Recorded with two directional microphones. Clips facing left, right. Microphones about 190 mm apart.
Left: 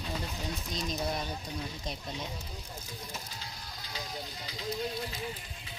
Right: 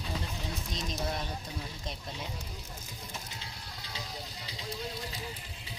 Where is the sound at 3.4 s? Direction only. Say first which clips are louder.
Left 1 dB; 30° right (ahead or behind).